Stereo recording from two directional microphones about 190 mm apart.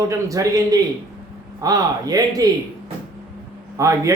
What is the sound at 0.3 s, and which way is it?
A man's voice, 20° right (ahead or behind).